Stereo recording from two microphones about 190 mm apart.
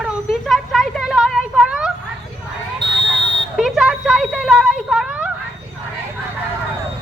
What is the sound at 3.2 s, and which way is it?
Buzzer, 70° right (ahead or behind).